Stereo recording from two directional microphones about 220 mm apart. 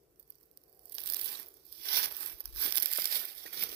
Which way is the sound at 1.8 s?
45° right (ahead or behind).